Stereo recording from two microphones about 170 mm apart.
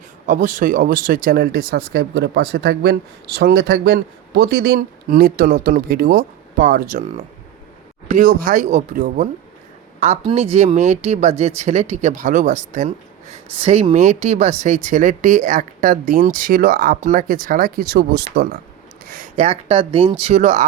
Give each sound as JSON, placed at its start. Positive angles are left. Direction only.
{"t": 0.3, "sound": "speech", "side_deg": -50}
{"t": 10.0, "sound": "speech", "side_deg": -40}
{"t": 13.3, "sound": "speech", "side_deg": -35}